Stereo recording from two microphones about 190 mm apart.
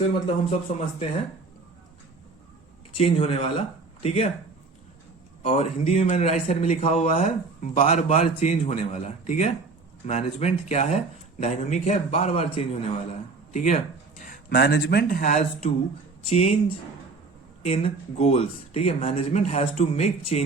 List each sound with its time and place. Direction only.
0.1 s a man's voice: 35° left (ahead or behind)
3.0 s a man's voice: 30° left (ahead or behind)
5.4 s a man's voice: 35° left (ahead or behind)
13.5 s a man's voice: 40° left (ahead or behind)